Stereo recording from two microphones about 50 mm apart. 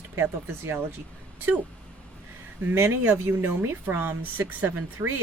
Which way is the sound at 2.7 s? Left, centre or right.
Right.